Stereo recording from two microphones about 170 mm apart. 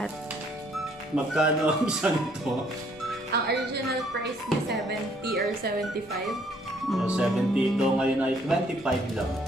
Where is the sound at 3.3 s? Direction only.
65° right (ahead or behind).